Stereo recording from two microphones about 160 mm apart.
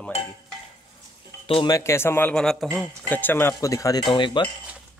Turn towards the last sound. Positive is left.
turn(degrees=30)  # may be behind; listen again after turning